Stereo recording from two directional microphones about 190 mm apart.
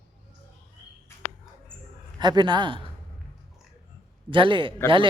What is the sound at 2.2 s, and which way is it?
Speech, 25° right (ahead or behind).